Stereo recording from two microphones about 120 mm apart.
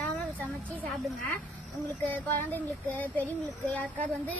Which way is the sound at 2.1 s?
15° left (ahead or behind).